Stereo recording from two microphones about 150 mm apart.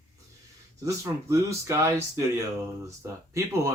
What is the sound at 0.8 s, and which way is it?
Speech, 20° right (ahead or behind).